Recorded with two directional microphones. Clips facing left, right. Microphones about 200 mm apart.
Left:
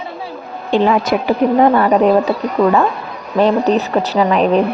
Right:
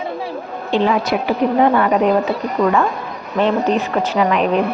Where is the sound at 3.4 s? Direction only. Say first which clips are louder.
Left 3 dB; 40° left (ahead or behind).